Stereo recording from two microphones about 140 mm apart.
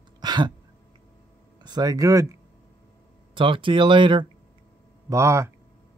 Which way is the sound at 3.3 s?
40° right (ahead or behind).